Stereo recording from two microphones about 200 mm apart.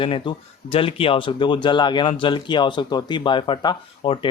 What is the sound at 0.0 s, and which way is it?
Speech, 25° left (ahead or behind).